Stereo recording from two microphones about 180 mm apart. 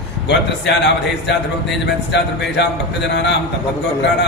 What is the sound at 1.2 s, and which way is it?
Speech, 75° left (ahead or behind).